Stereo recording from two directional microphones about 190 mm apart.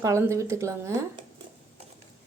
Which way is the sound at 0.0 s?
15° right (ahead or behind).